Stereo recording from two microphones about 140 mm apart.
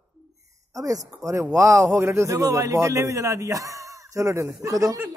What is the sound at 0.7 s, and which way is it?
A man's voice, 25° right (ahead or behind).